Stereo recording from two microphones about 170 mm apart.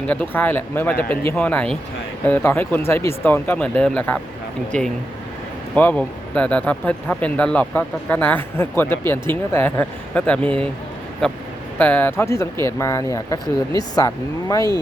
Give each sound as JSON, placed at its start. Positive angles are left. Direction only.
{"t": 0.1, "sound": "speech", "side_deg": 10}
{"t": 5.7, "sound": "speech", "side_deg": 10}